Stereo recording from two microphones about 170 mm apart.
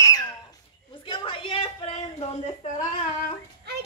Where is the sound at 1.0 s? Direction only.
30° left (ahead or behind).